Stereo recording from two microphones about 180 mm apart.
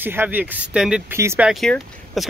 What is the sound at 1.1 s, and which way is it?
Speech, 15° right (ahead or behind).